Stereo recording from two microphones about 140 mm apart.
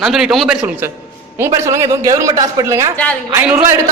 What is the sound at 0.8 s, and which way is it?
A woman's voice, 15° right (ahead or behind).